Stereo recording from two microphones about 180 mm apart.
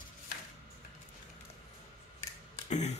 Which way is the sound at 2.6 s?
40° left (ahead or behind).